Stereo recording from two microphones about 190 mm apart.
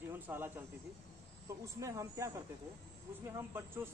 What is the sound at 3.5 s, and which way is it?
Speech, 10° right (ahead or behind).